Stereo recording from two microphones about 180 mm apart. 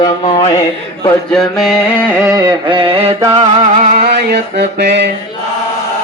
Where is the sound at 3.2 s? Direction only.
30° right (ahead or behind).